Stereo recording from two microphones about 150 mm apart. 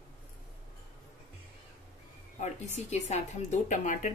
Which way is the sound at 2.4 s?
50° left (ahead or behind).